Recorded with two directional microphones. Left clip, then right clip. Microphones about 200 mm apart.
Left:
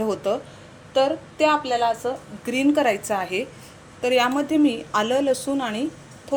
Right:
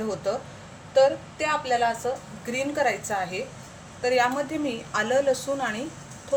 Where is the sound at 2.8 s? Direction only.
40° left (ahead or behind).